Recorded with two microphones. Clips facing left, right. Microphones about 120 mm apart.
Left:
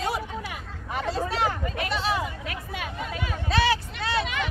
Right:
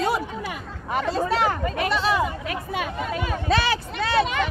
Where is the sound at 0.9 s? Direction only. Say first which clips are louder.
Right 4 dB; 85° right.